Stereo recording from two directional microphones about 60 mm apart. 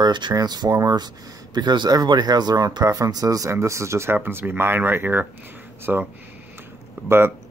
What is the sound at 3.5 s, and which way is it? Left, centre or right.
Speech, right.